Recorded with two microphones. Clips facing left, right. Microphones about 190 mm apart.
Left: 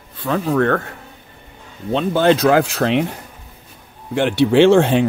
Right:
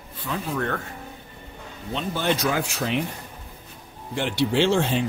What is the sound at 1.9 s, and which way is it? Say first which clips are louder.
Speech: left 10 dB; 80° left.